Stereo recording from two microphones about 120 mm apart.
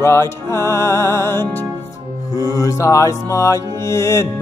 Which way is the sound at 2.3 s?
30° left (ahead or behind).